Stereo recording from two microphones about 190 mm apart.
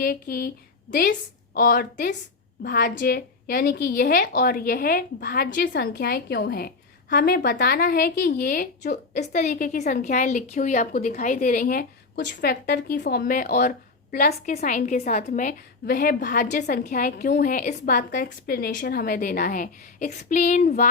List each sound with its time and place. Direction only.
0.0 s a woman's voice: 50° left (ahead or behind)